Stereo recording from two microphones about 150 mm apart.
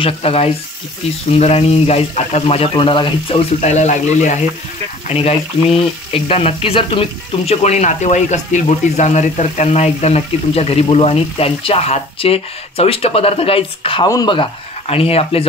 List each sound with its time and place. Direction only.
0.0 s speech: 40° left (ahead or behind)
3.6 s speech: 50° left (ahead or behind)
14.0 s speech: 25° left (ahead or behind)